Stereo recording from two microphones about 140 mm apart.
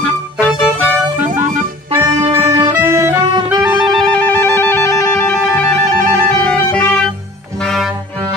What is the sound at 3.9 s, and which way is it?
Music, 10° left (ahead or behind).